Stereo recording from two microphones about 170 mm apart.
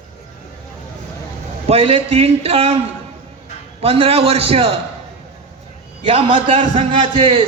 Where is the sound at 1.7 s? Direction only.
35° right (ahead or behind).